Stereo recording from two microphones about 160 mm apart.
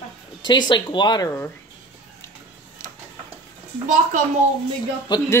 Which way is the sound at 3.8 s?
50° right (ahead or behind).